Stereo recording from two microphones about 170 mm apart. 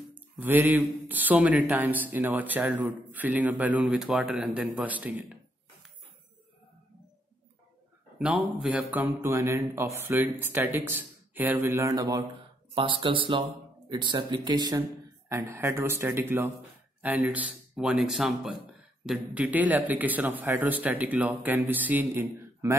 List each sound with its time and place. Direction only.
0.1 s speech: 10° right (ahead or behind)
8.2 s speech: 5° right (ahead or behind)